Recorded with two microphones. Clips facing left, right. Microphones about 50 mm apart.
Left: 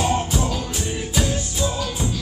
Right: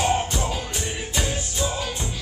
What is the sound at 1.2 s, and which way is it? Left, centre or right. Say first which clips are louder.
Music: left 3 dB; centre.